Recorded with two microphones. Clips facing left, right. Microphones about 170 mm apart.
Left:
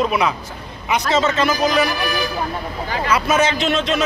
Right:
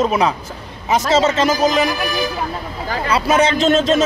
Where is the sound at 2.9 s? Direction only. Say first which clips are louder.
Right 2 dB; 30° right (ahead or behind).